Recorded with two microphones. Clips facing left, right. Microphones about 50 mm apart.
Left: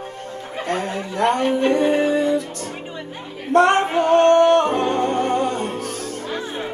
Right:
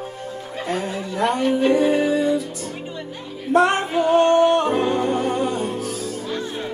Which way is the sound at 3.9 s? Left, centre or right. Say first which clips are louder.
Left 2 dB; left.